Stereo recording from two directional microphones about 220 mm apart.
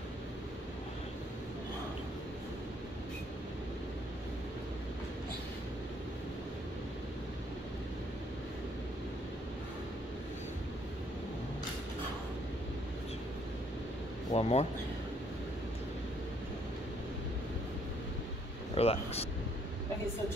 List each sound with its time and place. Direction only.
14.3 s speech: 30° left (ahead or behind)
18.8 s speech: 25° left (ahead or behind)